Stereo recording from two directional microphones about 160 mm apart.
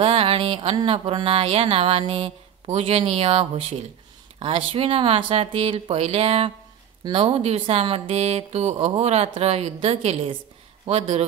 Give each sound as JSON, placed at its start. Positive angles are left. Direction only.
{"t": 0.0, "sound": "speech", "side_deg": -35}